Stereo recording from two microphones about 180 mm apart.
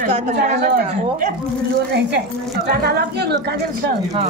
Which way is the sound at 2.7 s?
65° right (ahead or behind).